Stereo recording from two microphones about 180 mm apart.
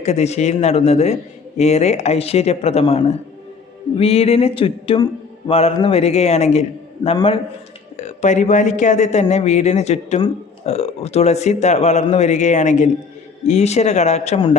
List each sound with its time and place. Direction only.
0.0 s a man's voice: 35° left (ahead or behind)